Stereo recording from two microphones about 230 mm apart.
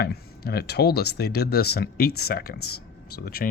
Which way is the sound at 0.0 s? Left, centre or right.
Left.